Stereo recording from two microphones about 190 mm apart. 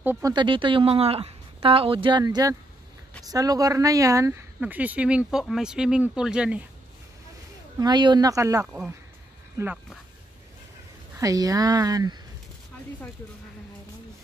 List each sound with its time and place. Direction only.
0.0 s speech: 10° right (ahead or behind)
0.3 s a woman's voice: 25° right (ahead or behind); by 6.6 s 5° right (ahead or behind)
7.8 s a woman's voice: 25° right (ahead or behind)
11.1 s a woman's voice: 20° right (ahead or behind)